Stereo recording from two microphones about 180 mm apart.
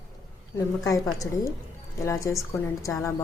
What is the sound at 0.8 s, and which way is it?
A woman's voice, 20° left (ahead or behind).